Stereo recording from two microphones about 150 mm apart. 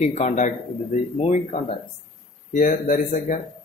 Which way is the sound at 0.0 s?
45° left (ahead or behind).